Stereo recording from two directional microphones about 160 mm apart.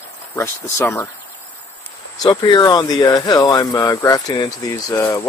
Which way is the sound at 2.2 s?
25° left (ahead or behind).